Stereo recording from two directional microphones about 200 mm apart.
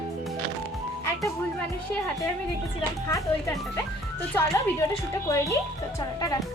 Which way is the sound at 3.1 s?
15° left (ahead or behind).